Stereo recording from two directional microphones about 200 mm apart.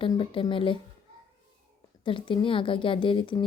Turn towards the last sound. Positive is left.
turn(degrees=25)  # may be behind; listen again after turning